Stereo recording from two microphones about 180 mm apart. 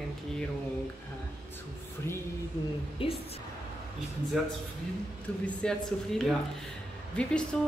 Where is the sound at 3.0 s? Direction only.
30° left (ahead or behind).